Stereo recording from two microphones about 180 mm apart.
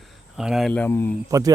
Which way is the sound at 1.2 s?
20° right (ahead or behind).